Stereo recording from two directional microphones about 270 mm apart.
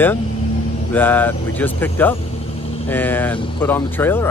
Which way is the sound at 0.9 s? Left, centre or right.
Centre.